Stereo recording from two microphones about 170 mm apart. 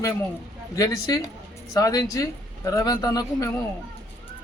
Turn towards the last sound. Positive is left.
turn(degrees=20)  # may be behind; listen again after turning